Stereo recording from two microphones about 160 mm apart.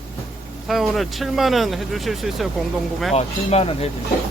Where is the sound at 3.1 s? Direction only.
40° left (ahead or behind).